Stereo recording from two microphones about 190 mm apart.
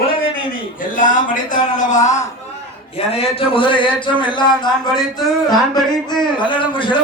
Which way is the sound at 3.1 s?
30° left (ahead or behind).